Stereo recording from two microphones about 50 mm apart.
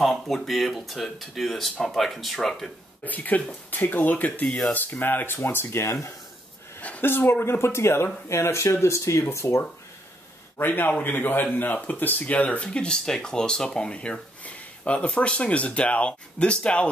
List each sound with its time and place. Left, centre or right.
0.0 s speech: centre
3.1 s a man's voice: left
4.5 s speech: centre
4.7 s speech: left
6.8 s a sound: left
7.1 s speech: left
10.6 s a man's voice: left